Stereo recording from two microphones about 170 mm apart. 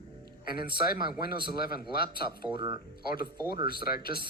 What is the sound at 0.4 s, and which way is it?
A man's voice, 65° left (ahead or behind).